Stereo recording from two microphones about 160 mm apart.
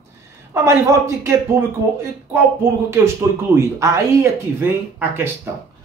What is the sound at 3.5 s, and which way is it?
Speech, 20° right (ahead or behind).